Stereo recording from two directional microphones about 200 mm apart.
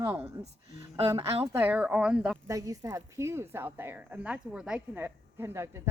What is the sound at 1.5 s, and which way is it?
Speech, 10° right (ahead or behind).